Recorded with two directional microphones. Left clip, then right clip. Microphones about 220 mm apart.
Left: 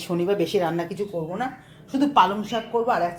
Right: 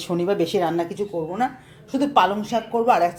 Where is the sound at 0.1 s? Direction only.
15° right (ahead or behind).